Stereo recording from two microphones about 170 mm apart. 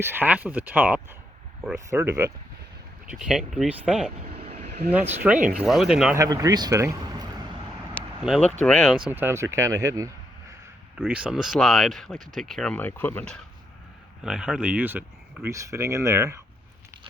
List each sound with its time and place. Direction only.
0.0 s speech: 10° right (ahead or behind)
3.1 s speech: 5° right (ahead or behind)
6.1 s speech: 20° right (ahead or behind)
8.2 s speech: 5° right (ahead or behind)
9.0 s speech: 10° right (ahead or behind)
10.9 s speech: 5° right (ahead or behind); by 13.4 s 10° left (ahead or behind)
14.2 s speech: 5° right (ahead or behind)